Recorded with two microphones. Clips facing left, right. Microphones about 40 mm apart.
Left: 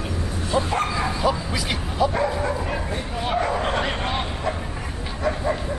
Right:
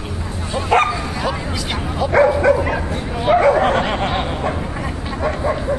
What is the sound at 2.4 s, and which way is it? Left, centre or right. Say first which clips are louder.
Bow-wow: right 10 dB; right.